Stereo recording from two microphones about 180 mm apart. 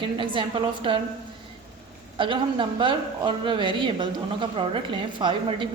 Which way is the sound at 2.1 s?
30° right (ahead or behind).